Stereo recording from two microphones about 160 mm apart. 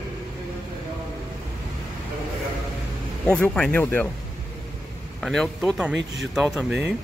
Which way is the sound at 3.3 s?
5° left (ahead or behind).